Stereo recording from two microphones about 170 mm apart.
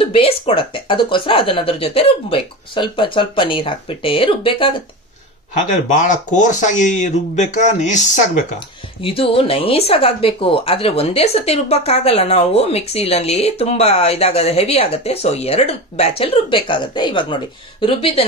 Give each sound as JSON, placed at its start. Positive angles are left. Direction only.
{"t": 0.0, "sound": "speech", "side_deg": 35}
{"t": 5.7, "sound": "speech", "side_deg": 50}
{"t": 9.0, "sound": "speech", "side_deg": 35}